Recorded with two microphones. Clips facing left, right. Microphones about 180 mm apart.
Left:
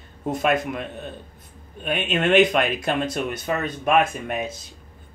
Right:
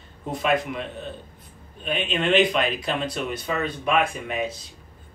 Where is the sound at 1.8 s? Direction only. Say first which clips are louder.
Left 2 dB; 50° left (ahead or behind).